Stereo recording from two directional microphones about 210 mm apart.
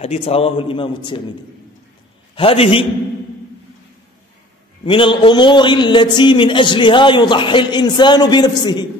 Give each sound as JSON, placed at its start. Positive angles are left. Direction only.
{"t": 0.0, "sound": "a man's voice", "side_deg": 30}
{"t": 2.3, "sound": "a man's voice", "side_deg": 25}
{"t": 4.8, "sound": "a man's voice", "side_deg": 25}